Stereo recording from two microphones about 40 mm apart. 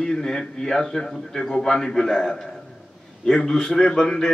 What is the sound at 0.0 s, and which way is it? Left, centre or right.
A man's voice, centre.